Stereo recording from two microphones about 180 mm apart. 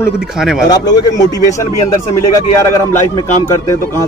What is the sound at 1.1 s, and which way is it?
A man's voice, 20° left (ahead or behind).